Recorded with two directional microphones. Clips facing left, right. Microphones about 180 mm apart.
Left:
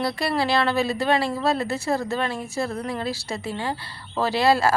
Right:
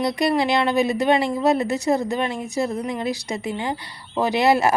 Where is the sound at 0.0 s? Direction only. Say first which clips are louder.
Right 4 dB; 20° right (ahead or behind).